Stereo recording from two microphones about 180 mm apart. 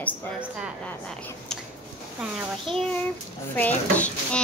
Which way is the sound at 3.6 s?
10° left (ahead or behind).